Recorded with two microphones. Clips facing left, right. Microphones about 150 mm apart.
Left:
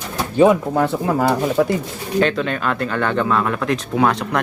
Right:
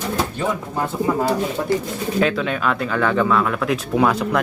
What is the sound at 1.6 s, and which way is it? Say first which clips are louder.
Speech: left 5 dB; 90° left.